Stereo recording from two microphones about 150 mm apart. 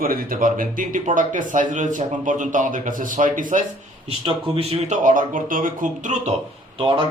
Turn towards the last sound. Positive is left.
turn(degrees=-35)  # may be behind; listen again after turning